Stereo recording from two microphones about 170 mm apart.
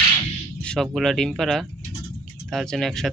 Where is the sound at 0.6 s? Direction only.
5° left (ahead or behind).